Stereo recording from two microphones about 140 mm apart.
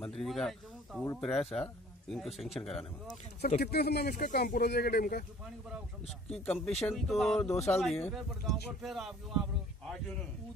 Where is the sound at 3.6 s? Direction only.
90° left.